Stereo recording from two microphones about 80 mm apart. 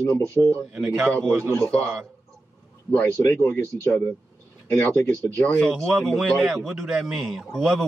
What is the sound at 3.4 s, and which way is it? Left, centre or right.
Speech, left.